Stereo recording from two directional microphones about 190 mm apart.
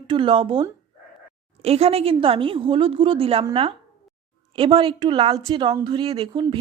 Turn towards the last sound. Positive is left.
turn(degrees=-25)  # may be behind; listen again after turning